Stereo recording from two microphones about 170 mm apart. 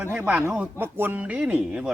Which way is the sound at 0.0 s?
10° right (ahead or behind).